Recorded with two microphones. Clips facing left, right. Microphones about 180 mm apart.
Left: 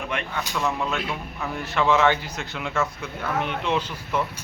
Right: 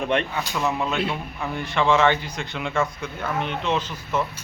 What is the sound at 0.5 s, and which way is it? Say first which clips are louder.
A man's voice: right 2 dB; 5° right (ahead or behind).